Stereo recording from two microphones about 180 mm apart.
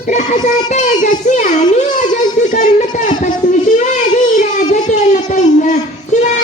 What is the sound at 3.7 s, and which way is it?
Child singing, 45° left (ahead or behind).